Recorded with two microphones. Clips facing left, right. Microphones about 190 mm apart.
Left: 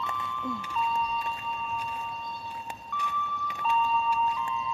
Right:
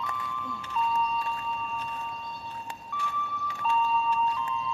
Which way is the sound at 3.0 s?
15° left (ahead or behind).